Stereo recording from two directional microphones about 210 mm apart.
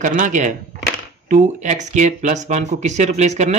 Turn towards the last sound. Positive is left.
turn(degrees=-35)  # may be behind; listen again after turning